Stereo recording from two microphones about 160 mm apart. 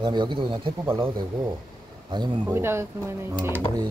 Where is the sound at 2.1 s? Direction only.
30° right (ahead or behind).